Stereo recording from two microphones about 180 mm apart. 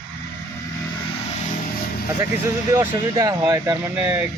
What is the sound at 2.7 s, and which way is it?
Speech, 20° right (ahead or behind).